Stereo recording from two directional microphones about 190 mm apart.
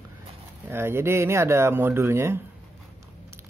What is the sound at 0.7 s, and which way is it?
Speech, 10° right (ahead or behind).